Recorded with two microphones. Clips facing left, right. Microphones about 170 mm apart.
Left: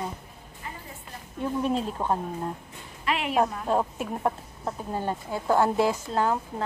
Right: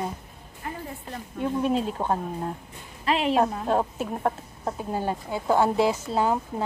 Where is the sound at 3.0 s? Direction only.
30° right (ahead or behind).